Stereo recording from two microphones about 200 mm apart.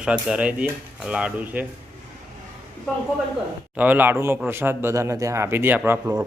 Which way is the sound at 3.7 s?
10° right (ahead or behind).